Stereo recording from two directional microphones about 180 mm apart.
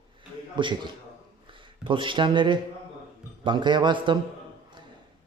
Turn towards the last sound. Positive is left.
turn(degrees=-25)  # may be behind; listen again after turning